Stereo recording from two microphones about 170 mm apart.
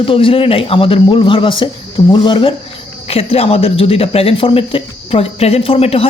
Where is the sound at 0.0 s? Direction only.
30° left (ahead or behind).